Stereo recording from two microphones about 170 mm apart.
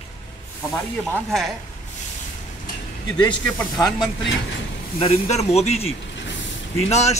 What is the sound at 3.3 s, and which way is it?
Speech, 5° left (ahead or behind).